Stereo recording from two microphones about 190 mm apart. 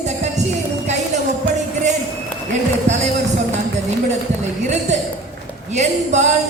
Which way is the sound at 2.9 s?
35° right (ahead or behind).